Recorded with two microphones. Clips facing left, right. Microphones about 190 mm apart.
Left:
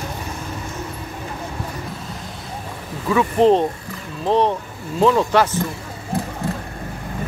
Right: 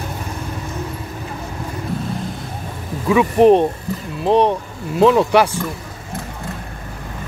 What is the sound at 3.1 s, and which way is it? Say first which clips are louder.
Speech: right 3 dB; 15° right (ahead or behind).